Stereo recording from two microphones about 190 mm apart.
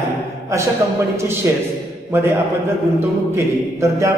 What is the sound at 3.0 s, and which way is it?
Speech, 15° right (ahead or behind).